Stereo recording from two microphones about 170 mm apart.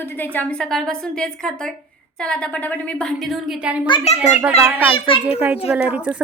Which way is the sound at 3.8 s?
35° left (ahead or behind).